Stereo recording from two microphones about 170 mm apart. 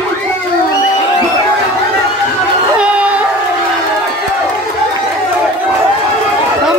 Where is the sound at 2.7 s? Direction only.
5° right (ahead or behind).